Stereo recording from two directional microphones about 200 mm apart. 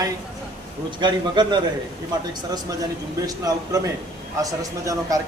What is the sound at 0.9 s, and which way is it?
Speech, 20° right (ahead or behind).